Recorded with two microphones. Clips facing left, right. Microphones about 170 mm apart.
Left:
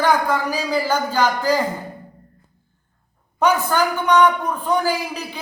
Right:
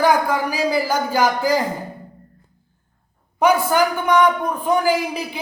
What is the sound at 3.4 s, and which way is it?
A man's voice, 10° right (ahead or behind).